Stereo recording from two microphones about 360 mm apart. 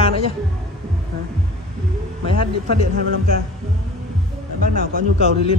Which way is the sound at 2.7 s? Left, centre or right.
Right.